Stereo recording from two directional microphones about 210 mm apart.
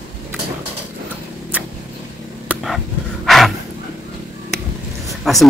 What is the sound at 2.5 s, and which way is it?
Dog, centre (ahead or behind).